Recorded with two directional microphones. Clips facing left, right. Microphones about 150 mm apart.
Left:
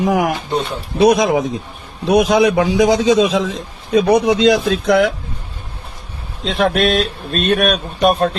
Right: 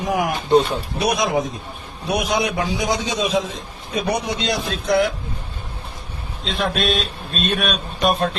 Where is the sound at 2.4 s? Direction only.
90° left.